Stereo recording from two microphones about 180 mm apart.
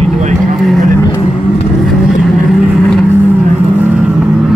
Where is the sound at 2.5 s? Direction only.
Centre (ahead or behind).